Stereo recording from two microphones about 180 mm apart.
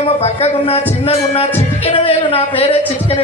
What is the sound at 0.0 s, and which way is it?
A man's voice, 35° left (ahead or behind).